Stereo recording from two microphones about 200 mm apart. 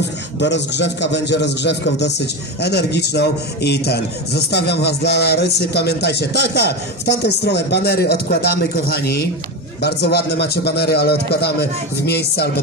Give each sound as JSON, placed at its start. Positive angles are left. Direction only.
{"t": 0.4, "sound": "a man's voice", "side_deg": 60}